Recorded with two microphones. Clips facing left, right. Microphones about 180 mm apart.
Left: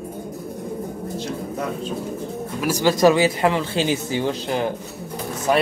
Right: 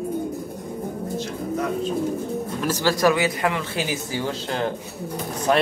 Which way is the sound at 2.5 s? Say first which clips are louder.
Left 4 dB; 10° left (ahead or behind).